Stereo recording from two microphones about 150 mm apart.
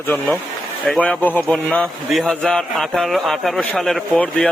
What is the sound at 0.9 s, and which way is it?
A man's voice, 5° left (ahead or behind).